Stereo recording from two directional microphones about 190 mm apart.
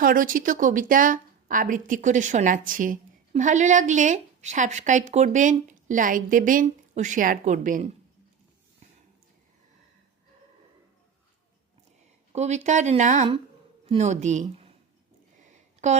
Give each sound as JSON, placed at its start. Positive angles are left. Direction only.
{"t": 0.0, "sound": "speech", "side_deg": -45}
{"t": 12.3, "sound": "a woman's voice", "side_deg": -35}
{"t": 15.4, "sound": "a sound", "side_deg": -40}